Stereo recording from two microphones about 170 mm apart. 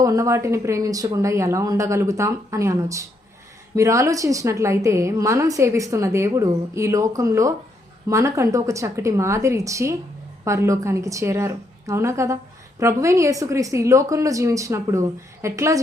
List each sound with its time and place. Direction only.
0.0 s a woman's voice: 20° right (ahead or behind)